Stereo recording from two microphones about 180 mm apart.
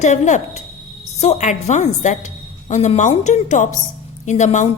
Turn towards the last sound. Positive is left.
turn(degrees=40)  # may be behind; listen again after turning